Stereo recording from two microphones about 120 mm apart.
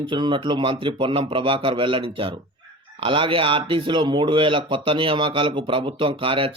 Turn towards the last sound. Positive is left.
turn(degrees=-50)  # may be behind; listen again after turning